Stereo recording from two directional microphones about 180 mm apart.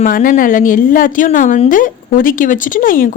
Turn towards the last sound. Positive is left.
turn(degrees=50)  # may be behind; listen again after turning